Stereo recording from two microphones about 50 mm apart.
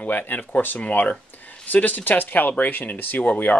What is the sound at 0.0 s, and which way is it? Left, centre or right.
Speech, left.